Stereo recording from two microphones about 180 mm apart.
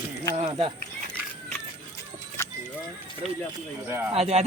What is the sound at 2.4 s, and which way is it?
Vehicle, 15° left (ahead or behind).